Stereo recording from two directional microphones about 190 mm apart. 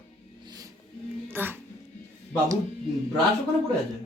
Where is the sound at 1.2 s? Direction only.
10° right (ahead or behind).